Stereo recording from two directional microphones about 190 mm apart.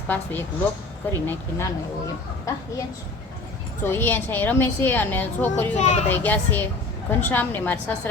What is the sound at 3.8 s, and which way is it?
A woman's voice, 10° left (ahead or behind).